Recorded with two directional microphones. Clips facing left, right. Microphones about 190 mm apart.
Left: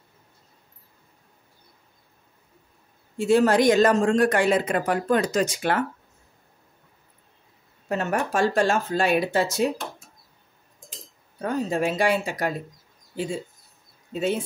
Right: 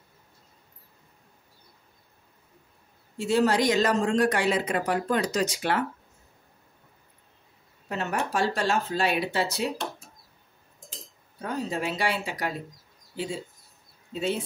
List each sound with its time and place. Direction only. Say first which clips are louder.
3.2 s speech: left 4 dB; 50° left (ahead or behind)
7.9 s speech: left 4 dB; 50° left (ahead or behind)
11.4 s speech: left 5 dB; 50° left (ahead or behind)